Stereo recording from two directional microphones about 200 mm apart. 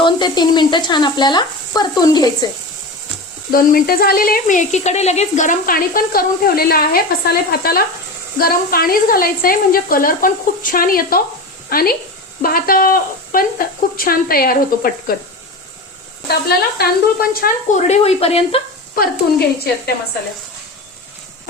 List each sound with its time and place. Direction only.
0.0 s speech: 20° left (ahead or behind)
3.5 s speech: 45° left (ahead or behind)
16.5 s speech: 50° left (ahead or behind); by 18.6 s 30° left (ahead or behind)
18.9 s speech: 50° left (ahead or behind)